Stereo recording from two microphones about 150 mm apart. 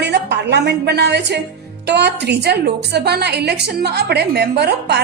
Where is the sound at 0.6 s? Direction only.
90° right.